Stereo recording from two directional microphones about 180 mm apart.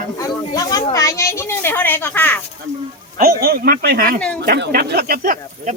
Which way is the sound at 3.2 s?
55° right (ahead or behind).